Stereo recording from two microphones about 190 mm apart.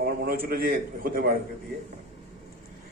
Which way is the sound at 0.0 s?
55° right (ahead or behind).